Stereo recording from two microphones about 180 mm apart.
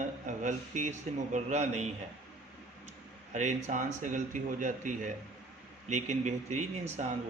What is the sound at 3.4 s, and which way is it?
Speech, 40° right (ahead or behind).